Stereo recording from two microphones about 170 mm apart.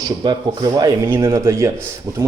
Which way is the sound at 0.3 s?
25° right (ahead or behind).